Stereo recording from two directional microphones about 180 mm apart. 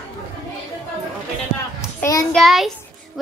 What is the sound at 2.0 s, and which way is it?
Speech, 20° left (ahead or behind).